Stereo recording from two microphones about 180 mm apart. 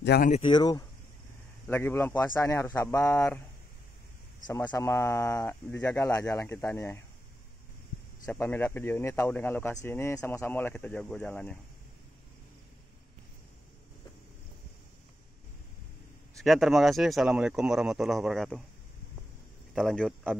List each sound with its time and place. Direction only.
0.1 s speech: 65° left (ahead or behind)
0.5 s speech: 20° left (ahead or behind)
1.7 s speech: 10° left (ahead or behind)
4.6 s speech: 15° left (ahead or behind)
8.3 s speech: 10° left (ahead or behind)
16.3 s speech: centre (ahead or behind)
19.7 s a man's voice: centre (ahead or behind)